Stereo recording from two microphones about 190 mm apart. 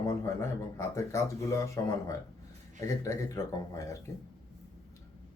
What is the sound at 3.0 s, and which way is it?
Speech, 15° left (ahead or behind).